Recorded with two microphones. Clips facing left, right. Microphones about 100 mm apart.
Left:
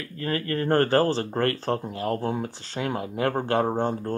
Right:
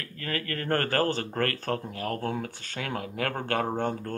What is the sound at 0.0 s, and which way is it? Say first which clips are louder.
Speech: left 5 dB; 25° left (ahead or behind).